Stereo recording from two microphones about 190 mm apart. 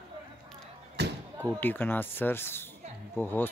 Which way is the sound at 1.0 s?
60° right (ahead or behind).